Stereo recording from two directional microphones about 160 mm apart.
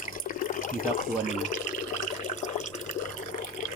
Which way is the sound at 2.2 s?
50° left (ahead or behind).